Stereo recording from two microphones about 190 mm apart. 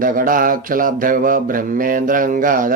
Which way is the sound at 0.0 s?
45° right (ahead or behind).